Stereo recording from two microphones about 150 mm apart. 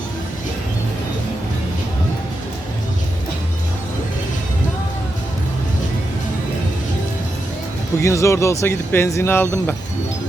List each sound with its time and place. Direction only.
8.0 s speech: 20° left (ahead or behind)